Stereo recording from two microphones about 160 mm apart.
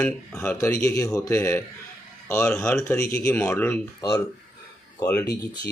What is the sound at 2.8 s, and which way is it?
Speech, 15° left (ahead or behind).